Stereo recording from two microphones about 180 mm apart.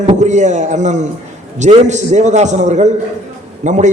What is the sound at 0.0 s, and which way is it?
A man's voice, 40° right (ahead or behind).